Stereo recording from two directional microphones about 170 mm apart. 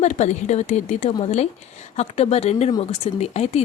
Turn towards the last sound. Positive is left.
turn(degrees=40)  # may be behind; listen again after turning